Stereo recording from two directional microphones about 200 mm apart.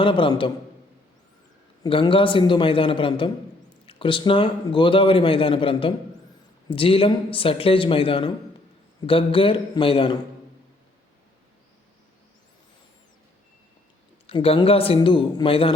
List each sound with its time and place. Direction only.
0.0 s speech: 25° left (ahead or behind)
1.8 s speech: 25° left (ahead or behind)
14.3 s speech: 30° left (ahead or behind)